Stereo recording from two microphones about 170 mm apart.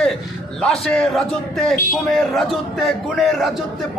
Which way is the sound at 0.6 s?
5° left (ahead or behind).